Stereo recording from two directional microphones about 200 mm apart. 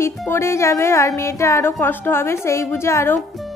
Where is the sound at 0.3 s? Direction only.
15° left (ahead or behind).